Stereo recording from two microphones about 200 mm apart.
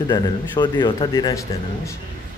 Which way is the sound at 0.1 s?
20° left (ahead or behind).